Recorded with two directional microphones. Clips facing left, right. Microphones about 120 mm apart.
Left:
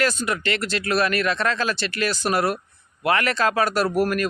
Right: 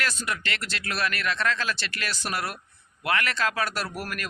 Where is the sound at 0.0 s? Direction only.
35° left (ahead or behind).